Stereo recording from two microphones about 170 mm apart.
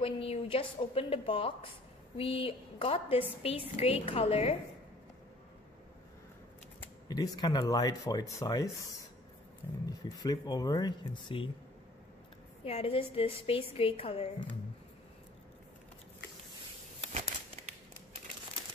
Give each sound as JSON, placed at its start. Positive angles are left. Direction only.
{"t": 0.0, "sound": "a woman's voice", "side_deg": 35}
{"t": 7.1, "sound": "speech", "side_deg": 20}
{"t": 9.8, "sound": "speech", "side_deg": 25}
{"t": 12.6, "sound": "a woman's voice", "side_deg": 35}